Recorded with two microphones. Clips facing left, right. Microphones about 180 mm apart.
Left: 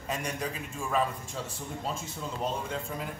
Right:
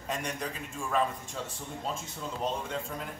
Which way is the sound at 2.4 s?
5° left (ahead or behind).